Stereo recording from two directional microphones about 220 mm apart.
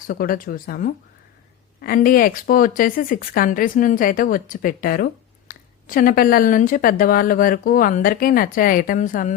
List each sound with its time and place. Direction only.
0.1 s speech: 40° left (ahead or behind)